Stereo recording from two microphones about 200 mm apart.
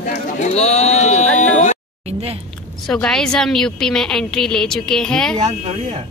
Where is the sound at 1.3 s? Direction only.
35° left (ahead or behind).